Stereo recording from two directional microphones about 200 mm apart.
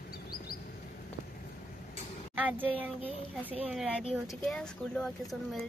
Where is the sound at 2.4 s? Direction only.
10° right (ahead or behind).